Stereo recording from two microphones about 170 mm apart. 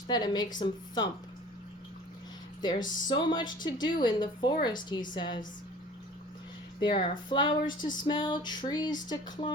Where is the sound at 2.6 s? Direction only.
25° left (ahead or behind).